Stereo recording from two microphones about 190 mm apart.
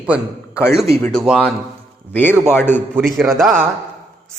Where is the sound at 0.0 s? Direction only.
5° right (ahead or behind).